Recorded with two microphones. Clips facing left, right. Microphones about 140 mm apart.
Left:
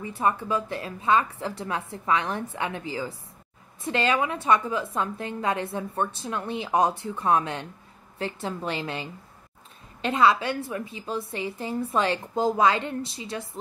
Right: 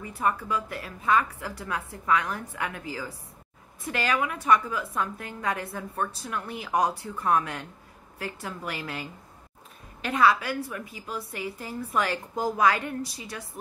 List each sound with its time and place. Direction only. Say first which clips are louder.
0.0 s a woman's voice: left 2 dB; 25° left (ahead or behind)